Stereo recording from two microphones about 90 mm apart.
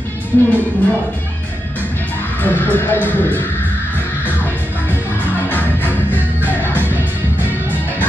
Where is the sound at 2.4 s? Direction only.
20° left (ahead or behind).